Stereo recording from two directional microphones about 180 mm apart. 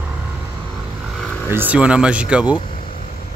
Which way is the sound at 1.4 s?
10° right (ahead or behind).